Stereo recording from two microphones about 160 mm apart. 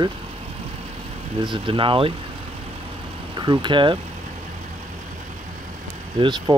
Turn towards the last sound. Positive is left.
turn(degrees=-30)  # may be behind; listen again after turning